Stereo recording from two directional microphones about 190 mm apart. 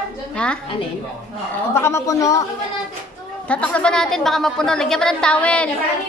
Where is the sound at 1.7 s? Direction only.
15° left (ahead or behind).